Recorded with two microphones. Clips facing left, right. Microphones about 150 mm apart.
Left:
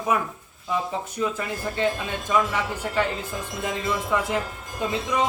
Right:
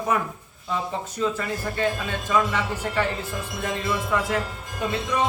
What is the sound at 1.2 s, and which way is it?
A man's voice, 15° left (ahead or behind).